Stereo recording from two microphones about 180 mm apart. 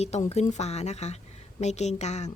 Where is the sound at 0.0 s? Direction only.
35° left (ahead or behind).